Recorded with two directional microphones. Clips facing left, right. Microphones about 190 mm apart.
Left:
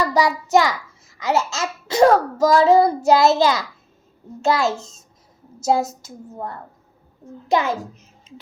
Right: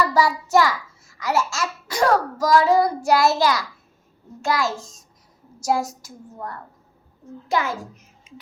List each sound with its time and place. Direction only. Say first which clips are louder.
0.0 s a child's voice: left 1 dB; 20° left (ahead or behind)
7.4 s a child's voice: left 4 dB; 20° left (ahead or behind)
8.3 s a sound: left 2 dB; 10° right (ahead or behind)